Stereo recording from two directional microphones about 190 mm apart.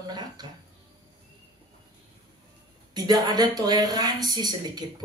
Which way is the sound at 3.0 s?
20° right (ahead or behind).